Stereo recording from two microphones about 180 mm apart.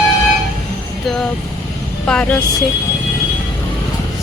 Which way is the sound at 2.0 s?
5° left (ahead or behind).